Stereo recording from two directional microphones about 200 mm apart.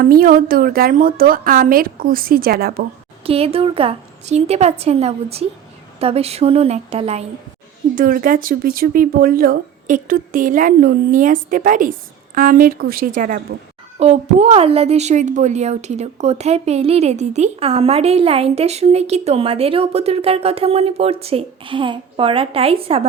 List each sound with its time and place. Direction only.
0.0 s speech: 45° right (ahead or behind)
3.2 s a woman's voice: 30° right (ahead or behind)
7.9 s a woman's voice: 45° right (ahead or behind)